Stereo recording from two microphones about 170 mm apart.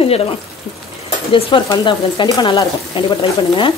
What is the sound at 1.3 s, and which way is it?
Speech, 30° left (ahead or behind).